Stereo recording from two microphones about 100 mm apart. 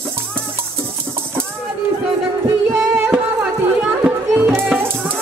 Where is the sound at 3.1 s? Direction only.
10° right (ahead or behind).